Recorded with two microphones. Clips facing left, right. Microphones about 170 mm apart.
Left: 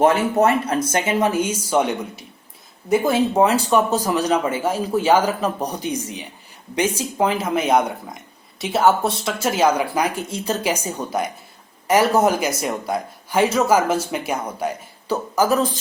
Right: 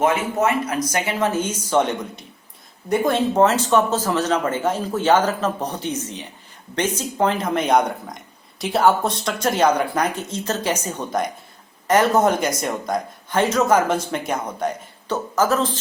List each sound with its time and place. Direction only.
0.0 s speech: 35° left (ahead or behind); by 15.8 s 10° left (ahead or behind)